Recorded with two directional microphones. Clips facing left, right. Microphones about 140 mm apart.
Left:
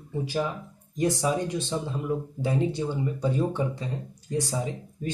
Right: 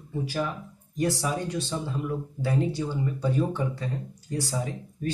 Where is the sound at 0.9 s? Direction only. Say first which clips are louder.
Left 2 dB; 20° left (ahead or behind).